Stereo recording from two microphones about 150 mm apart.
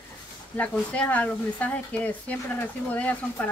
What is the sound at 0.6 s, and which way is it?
A woman's voice, 10° left (ahead or behind).